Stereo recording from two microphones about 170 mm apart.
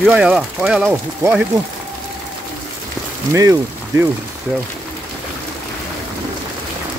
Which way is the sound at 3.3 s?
20° right (ahead or behind).